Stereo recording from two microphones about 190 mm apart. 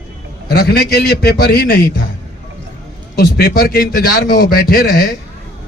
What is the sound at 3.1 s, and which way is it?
A man's voice, 50° left (ahead or behind).